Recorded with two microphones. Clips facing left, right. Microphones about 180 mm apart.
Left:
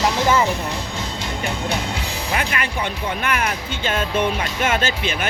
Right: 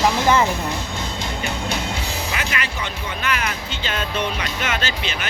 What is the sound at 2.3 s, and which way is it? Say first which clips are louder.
Speech: left 7 dB; 55° left (ahead or behind).